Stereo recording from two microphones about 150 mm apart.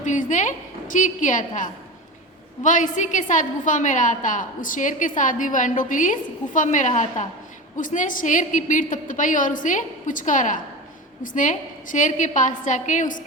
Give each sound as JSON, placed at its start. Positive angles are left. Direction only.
{"t": 0.0, "sound": "a woman's voice", "side_deg": 55}